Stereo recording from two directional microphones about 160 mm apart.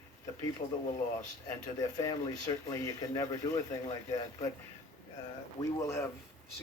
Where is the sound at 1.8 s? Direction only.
25° left (ahead or behind).